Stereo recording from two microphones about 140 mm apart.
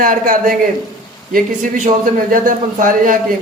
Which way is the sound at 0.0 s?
80° right.